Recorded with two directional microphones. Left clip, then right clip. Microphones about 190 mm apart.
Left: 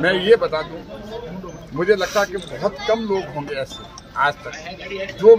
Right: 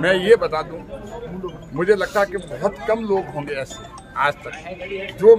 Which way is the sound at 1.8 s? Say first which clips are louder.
Even; 15° right (ahead or behind).